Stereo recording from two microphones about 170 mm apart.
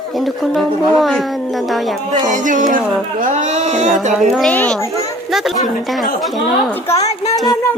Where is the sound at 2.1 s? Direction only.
50° right (ahead or behind).